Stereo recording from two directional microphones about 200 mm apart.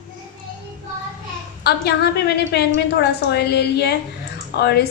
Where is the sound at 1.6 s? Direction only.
55° left (ahead or behind).